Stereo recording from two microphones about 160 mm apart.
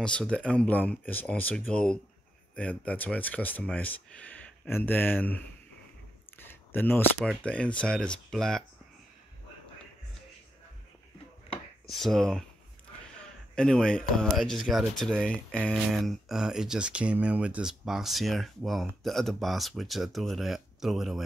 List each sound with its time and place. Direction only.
0.0 s speech: 5° left (ahead or behind)
6.3 s camera: 15° left (ahead or behind)
7.2 s speech: 5° left (ahead or behind)
11.9 s speech: centre (ahead or behind)
13.6 s speech: 5° left (ahead or behind)